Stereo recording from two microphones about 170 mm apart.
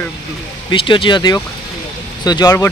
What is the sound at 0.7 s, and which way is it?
Speech, 30° left (ahead or behind).